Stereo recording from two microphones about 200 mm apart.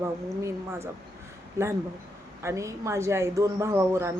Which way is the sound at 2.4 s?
15° right (ahead or behind).